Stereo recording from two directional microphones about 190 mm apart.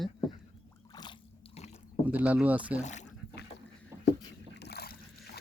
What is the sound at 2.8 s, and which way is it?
Speech, 40° left (ahead or behind).